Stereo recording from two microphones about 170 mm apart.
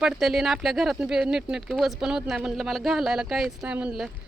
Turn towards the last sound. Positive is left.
turn(degrees=-5)  # may be behind; listen again after turning